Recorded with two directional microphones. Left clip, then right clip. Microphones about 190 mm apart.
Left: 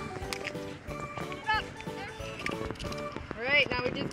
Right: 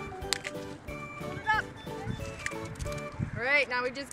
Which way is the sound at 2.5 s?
5° right (ahead or behind).